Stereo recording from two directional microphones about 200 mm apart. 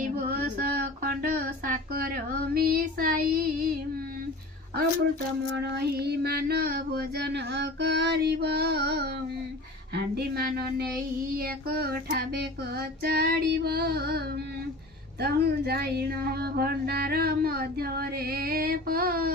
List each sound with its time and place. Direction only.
0.0 s female singing: 45° right (ahead or behind)
1.6 s child singing: 45° right (ahead or behind)
5.7 s a sound: 55° right (ahead or behind)